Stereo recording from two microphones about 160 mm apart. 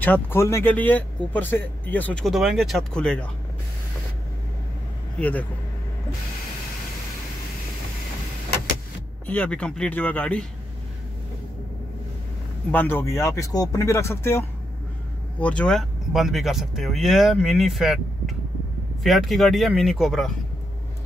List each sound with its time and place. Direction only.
0.0 s speech: 10° left (ahead or behind)
5.2 s speech: 10° left (ahead or behind)
9.2 s speech: 10° left (ahead or behind)
12.7 s speech: 15° left (ahead or behind)